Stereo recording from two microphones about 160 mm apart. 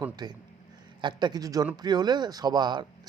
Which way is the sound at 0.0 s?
25° right (ahead or behind).